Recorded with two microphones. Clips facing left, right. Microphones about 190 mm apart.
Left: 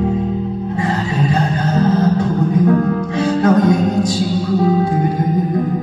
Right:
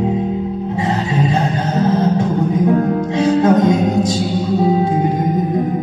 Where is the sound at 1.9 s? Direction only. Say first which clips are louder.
Even; 20° right (ahead or behind).